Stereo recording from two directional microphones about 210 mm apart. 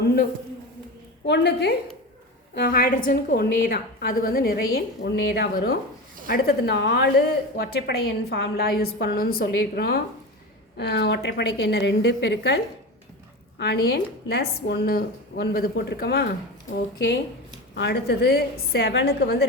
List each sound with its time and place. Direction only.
1.3 s a woman's voice: 55° left (ahead or behind)
13.6 s speech: 50° left (ahead or behind)
17.7 s speech: 50° left (ahead or behind)